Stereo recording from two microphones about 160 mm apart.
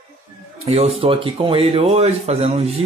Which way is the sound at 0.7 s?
40° right (ahead or behind).